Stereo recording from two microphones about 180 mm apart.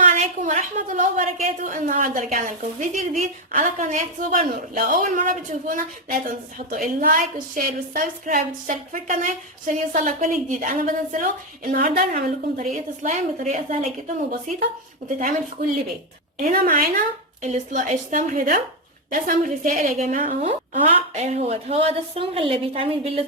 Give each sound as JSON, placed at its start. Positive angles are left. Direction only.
{"t": 0.0, "sound": "a woman's voice", "side_deg": -40}
{"t": 16.4, "sound": "a woman's voice", "side_deg": -55}